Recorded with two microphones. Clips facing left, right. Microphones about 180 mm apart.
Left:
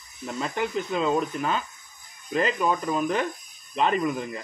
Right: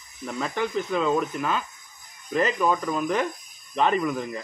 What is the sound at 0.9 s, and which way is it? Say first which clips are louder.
Speech: even; 30° left (ahead or behind).